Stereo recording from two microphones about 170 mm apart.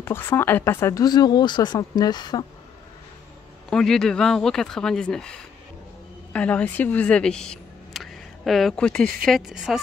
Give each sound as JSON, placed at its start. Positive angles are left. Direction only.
{"t": 0.0, "sound": "speech", "side_deg": 15}
{"t": 3.7, "sound": "speech", "side_deg": 5}